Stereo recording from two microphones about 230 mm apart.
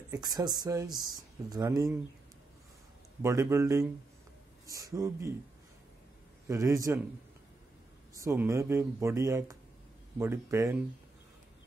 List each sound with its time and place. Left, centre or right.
0.1 s speech: centre
3.2 s speech: centre
6.4 s speech: centre
8.1 s speech: centre